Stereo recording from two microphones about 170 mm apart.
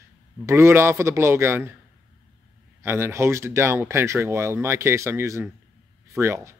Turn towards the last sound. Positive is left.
turn(degrees=-15)  # may be behind; listen again after turning